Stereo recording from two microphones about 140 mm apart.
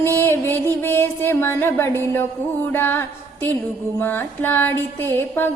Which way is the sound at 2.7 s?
15° left (ahead or behind).